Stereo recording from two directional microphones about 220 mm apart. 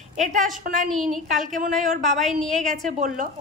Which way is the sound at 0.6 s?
35° right (ahead or behind).